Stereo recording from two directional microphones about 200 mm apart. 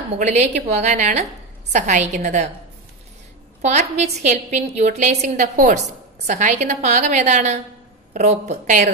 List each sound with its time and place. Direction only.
0.2 s a woman's voice: 35° right (ahead or behind)
3.6 s a woman's voice: 35° right (ahead or behind)